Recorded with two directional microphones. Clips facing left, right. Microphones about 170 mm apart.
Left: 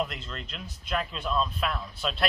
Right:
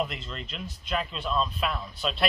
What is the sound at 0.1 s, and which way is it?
Speech, centre (ahead or behind).